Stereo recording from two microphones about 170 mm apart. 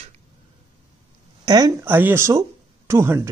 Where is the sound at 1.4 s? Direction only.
20° right (ahead or behind).